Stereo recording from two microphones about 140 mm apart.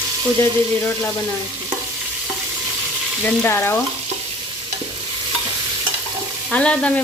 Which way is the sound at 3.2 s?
15° left (ahead or behind).